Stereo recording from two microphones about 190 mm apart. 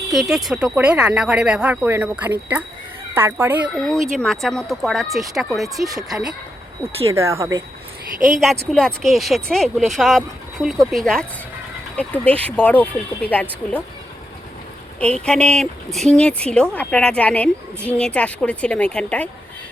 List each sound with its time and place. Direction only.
0.1 s speech: centre (ahead or behind)
3.8 s speech: centre (ahead or behind)
7.1 s speech: 15° right (ahead or behind)
8.7 s speech: 5° left (ahead or behind)
14.9 s speech: 5° left (ahead or behind)